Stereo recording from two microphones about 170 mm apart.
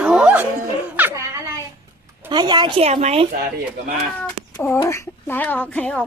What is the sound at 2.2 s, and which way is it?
A woman's voice, 25° right (ahead or behind).